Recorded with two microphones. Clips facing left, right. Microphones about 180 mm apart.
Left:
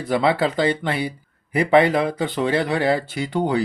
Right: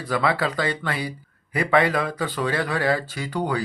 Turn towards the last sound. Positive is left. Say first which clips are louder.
# left 4 dB
turn(degrees=25)  # may be behind; listen again after turning